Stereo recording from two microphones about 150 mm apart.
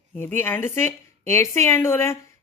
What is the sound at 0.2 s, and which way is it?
A woman's voice, 15° left (ahead or behind).